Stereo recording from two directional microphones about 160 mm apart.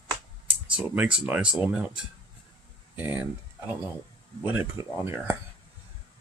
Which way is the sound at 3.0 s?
10° right (ahead or behind).